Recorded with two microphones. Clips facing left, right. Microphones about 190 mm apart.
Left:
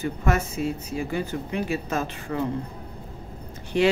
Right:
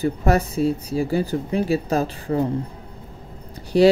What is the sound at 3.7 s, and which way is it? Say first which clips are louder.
Speech: right 7 dB; 35° right (ahead or behind).